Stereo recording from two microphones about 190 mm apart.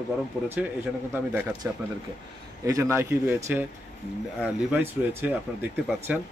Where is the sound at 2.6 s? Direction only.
15° right (ahead or behind).